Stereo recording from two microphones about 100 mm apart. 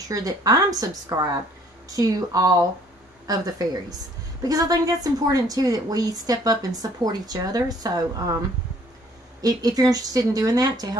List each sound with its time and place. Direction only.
0.1 s a woman's voice: 40° right (ahead or behind)